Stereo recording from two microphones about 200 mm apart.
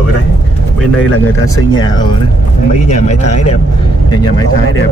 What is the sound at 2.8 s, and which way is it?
Speech, 35° left (ahead or behind).